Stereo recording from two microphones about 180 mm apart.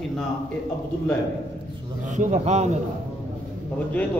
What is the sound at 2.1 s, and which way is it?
Speech, 40° right (ahead or behind).